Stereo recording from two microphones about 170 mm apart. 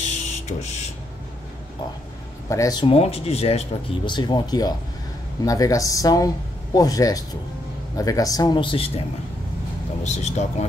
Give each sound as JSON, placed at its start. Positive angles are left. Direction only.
{"t": 0.0, "sound": "printer", "side_deg": 40}
{"t": 2.5, "sound": "speech", "side_deg": 20}
{"t": 10.0, "sound": "speech", "side_deg": 40}